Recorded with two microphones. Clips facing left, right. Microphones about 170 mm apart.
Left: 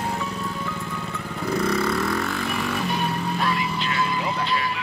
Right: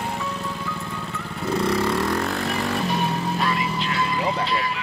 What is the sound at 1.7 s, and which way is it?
Vehicle, 35° right (ahead or behind).